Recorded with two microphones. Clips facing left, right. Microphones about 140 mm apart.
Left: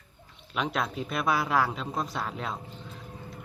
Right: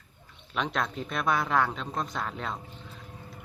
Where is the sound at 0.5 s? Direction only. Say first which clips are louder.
Left 1 dB; 5° left (ahead or behind).